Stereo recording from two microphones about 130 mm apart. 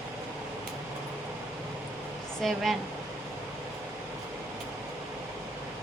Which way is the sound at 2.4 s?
Centre (ahead or behind).